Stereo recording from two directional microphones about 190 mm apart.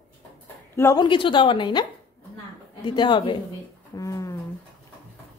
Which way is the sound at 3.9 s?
15° left (ahead or behind).